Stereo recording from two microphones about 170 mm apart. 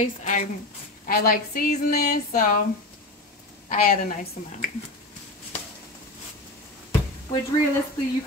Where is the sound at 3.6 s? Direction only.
55° left (ahead or behind).